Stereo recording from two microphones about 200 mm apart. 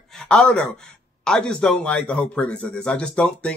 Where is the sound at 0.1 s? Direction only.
5° left (ahead or behind).